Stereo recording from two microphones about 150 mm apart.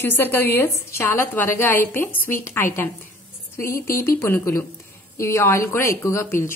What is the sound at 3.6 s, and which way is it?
Speech, 70° left (ahead or behind).